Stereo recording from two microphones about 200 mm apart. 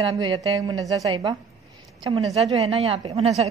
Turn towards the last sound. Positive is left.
turn(degrees=-30)  # may be behind; listen again after turning